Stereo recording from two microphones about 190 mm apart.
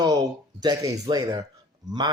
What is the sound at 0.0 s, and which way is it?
Speech, 20° right (ahead or behind).